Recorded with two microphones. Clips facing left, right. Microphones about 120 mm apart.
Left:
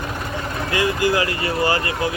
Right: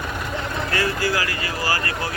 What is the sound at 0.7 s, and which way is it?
Speech, 20° left (ahead or behind).